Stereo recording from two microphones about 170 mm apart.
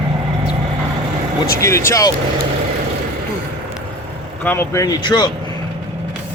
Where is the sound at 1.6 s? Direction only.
15° left (ahead or behind).